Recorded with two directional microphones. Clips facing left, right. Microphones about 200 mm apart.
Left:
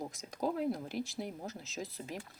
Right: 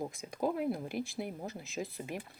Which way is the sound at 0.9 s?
55° right (ahead or behind).